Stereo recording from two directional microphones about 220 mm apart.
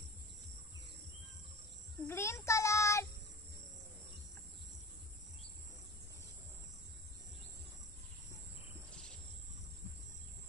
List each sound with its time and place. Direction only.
2.0 s child singing: 10° left (ahead or behind)